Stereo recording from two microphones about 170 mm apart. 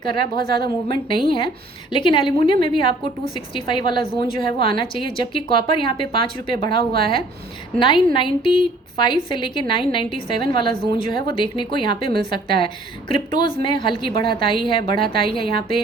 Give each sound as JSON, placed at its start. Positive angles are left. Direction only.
{"t": 0.0, "sound": "a woman's voice", "side_deg": 30}
{"t": 7.8, "sound": "a woman's voice", "side_deg": 30}